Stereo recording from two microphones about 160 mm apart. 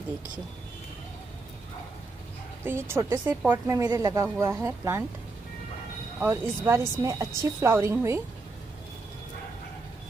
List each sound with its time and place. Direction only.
2.6 s a woman's voice: 15° right (ahead or behind)
6.1 s a woman's voice: 15° right (ahead or behind)